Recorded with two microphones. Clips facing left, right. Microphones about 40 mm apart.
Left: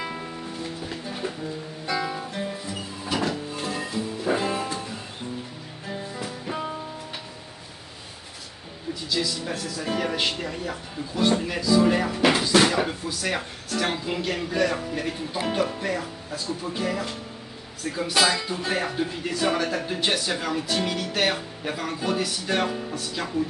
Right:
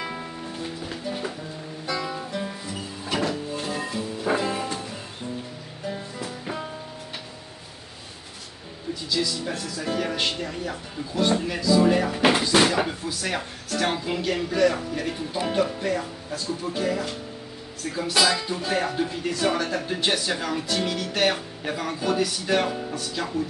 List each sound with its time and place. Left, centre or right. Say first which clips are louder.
0.0 s music: even; centre
1.9 s guitar: left 1 dB; centre
3.1 s music: right 1 dB; centre
4.4 s music: even; centre
9.1 s speech: right 1 dB; centre